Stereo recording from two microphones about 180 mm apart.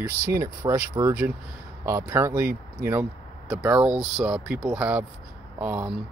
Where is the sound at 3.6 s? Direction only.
5° right (ahead or behind).